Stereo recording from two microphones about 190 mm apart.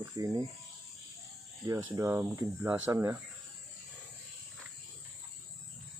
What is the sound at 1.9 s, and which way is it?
Speech, 15° right (ahead or behind).